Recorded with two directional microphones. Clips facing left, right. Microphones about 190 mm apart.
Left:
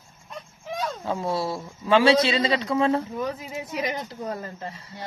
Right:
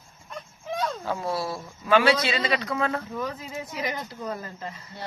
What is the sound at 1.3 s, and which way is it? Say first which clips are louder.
A man's voice: left 3 dB; 25° left (ahead or behind).